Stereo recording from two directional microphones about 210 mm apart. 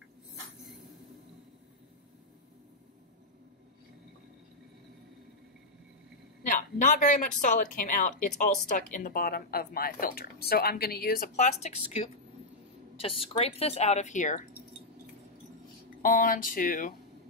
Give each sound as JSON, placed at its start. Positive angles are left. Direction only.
{"t": 6.4, "sound": "a woman's voice", "side_deg": 40}
{"t": 12.9, "sound": "speech", "side_deg": 25}
{"t": 16.0, "sound": "speech", "side_deg": 40}